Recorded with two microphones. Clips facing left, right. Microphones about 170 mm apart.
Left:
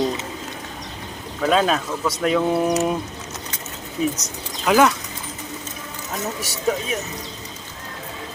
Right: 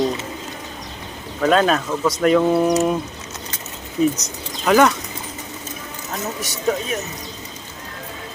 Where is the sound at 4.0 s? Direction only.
Centre (ahead or behind).